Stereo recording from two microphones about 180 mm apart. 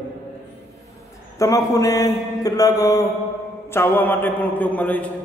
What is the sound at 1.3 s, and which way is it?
A man's voice, 20° left (ahead or behind).